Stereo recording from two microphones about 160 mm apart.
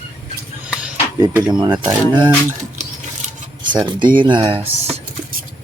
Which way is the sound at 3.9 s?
30° right (ahead or behind).